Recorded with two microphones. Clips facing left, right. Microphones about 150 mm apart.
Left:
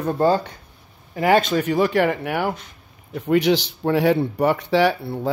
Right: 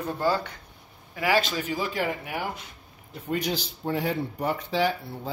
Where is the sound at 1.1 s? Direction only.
50° left (ahead or behind); by 2.5 s 70° left (ahead or behind).